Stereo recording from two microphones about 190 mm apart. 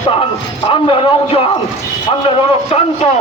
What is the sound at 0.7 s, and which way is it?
A man's voice, 30° left (ahead or behind).